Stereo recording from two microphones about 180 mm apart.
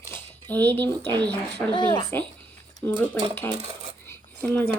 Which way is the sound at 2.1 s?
10° left (ahead or behind).